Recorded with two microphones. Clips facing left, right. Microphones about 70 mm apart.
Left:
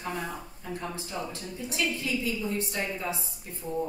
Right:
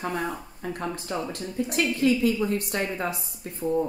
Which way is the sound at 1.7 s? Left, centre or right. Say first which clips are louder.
Right 7 dB; right.